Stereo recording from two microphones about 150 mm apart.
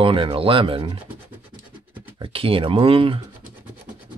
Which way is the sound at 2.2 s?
35° right (ahead or behind).